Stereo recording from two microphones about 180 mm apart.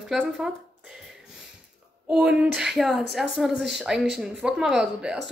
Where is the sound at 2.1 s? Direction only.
5° right (ahead or behind).